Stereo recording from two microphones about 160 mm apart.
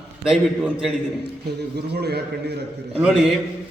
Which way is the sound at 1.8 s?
90° right.